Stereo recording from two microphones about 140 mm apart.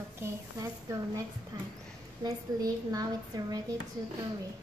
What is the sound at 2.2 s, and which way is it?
Speech, 30° right (ahead or behind).